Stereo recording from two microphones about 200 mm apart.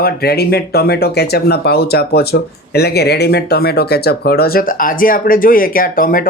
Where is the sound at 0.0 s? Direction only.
50° left (ahead or behind).